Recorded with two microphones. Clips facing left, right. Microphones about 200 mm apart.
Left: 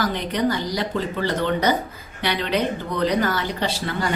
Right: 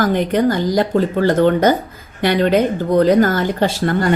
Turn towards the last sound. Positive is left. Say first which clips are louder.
# right 8 dB
turn(degrees=-50)  # may be behind; listen again after turning